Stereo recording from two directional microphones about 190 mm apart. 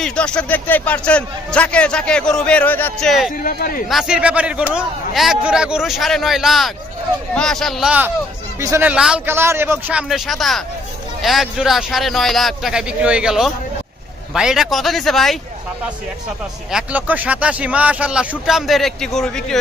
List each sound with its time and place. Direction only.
0.0 s a man's voice: 5° left (ahead or behind)
3.4 s speech: 45° left (ahead or behind)
3.9 s a man's voice: 5° right (ahead or behind)
16.7 s speech: 10° right (ahead or behind)